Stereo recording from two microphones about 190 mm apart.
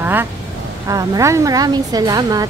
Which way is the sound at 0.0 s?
10° right (ahead or behind).